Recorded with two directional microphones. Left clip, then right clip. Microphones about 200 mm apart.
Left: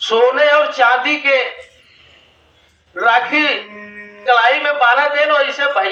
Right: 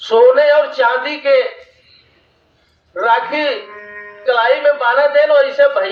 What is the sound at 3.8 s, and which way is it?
Music, 25° right (ahead or behind).